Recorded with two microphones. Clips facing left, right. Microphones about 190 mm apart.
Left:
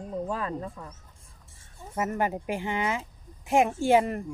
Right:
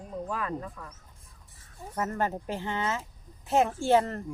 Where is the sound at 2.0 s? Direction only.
15° left (ahead or behind).